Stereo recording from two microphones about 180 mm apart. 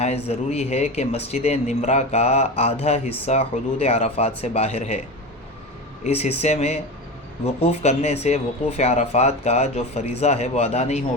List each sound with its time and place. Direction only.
0.0 s speech: 35° left (ahead or behind)
6.1 s speech: 35° left (ahead or behind)